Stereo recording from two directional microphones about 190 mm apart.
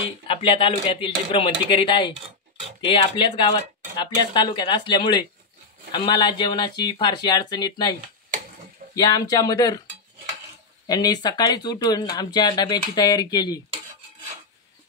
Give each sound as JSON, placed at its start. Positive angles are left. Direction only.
{"t": 0.3, "sound": "speech", "side_deg": 30}
{"t": 8.9, "sound": "speech", "side_deg": 20}
{"t": 10.9, "sound": "speech", "side_deg": 20}